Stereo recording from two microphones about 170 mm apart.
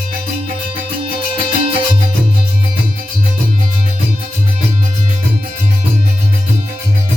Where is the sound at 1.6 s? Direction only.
30° right (ahead or behind).